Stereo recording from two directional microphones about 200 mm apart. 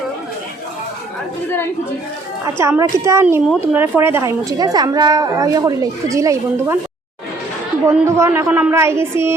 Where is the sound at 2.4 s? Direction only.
15° right (ahead or behind).